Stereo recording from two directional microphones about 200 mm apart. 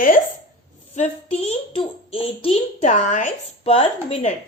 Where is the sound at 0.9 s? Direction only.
35° left (ahead or behind).